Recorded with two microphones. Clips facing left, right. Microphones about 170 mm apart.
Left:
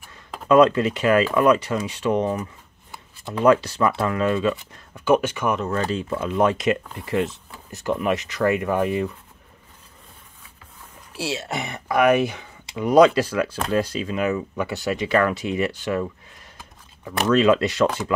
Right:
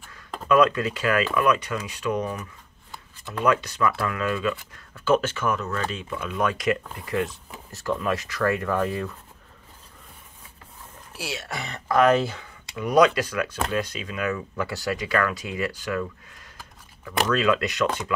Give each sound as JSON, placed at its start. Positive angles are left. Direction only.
{"t": 0.5, "sound": "speech", "side_deg": 30}
{"t": 3.4, "sound": "speech", "side_deg": 30}
{"t": 5.6, "sound": "speech", "side_deg": 35}
{"t": 11.1, "sound": "speech", "side_deg": 25}
{"t": 16.5, "sound": "shuffling cards", "side_deg": 25}